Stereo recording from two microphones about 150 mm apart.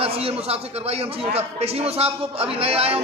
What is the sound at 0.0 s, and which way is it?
A man's voice, 40° right (ahead or behind).